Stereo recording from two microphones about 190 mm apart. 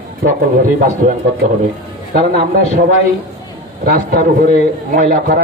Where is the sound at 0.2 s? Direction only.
45° right (ahead or behind).